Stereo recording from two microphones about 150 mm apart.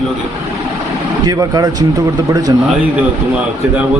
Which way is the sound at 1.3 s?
25° right (ahead or behind).